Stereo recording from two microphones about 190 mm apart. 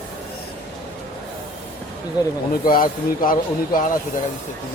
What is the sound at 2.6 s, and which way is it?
Speech, 50° left (ahead or behind).